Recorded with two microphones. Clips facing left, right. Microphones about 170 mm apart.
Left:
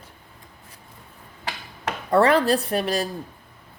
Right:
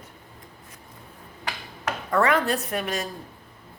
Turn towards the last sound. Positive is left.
turn(degrees=35)  # may be behind; listen again after turning